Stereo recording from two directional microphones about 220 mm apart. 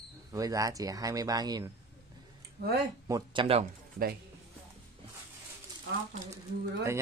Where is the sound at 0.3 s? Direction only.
15° right (ahead or behind).